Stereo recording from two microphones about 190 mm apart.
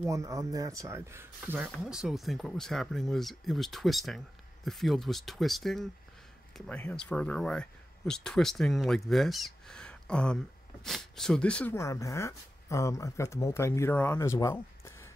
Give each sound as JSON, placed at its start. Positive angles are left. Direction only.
{"t": 0.0, "sound": "speech", "side_deg": -15}